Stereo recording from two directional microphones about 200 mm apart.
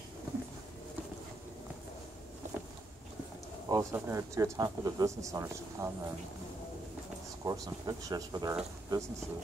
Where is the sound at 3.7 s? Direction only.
15° right (ahead or behind).